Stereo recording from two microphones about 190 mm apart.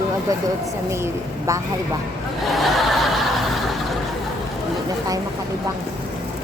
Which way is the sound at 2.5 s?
Centre (ahead or behind).